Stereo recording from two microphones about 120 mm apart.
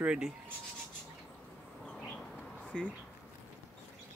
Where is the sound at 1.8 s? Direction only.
5° left (ahead or behind).